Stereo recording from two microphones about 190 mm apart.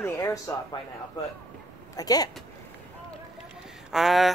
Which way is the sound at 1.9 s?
20° left (ahead or behind).